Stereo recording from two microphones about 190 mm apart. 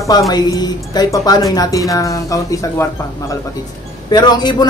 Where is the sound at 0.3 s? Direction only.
20° left (ahead or behind).